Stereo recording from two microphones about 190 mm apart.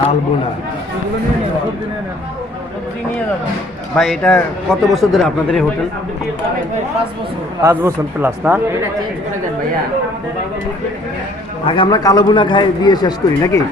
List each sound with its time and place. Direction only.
3.9 s speech: 5° left (ahead or behind)
7.6 s a man's voice: 15° right (ahead or behind)
11.6 s a man's voice: 25° left (ahead or behind)